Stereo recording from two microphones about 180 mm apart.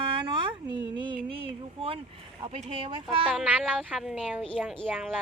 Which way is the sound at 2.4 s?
35° right (ahead or behind).